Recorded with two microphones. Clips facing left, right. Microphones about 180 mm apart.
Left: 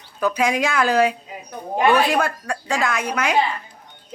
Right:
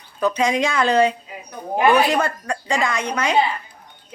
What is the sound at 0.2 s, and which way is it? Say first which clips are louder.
Speech: right 1 dB; 5° left (ahead or behind).